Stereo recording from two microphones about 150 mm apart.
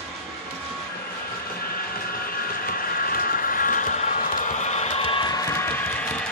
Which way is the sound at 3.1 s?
65° left (ahead or behind).